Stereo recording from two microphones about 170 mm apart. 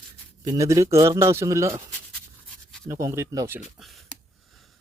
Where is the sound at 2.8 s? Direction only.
15° right (ahead or behind).